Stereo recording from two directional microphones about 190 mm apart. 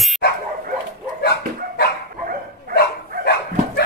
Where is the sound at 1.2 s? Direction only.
60° left (ahead or behind).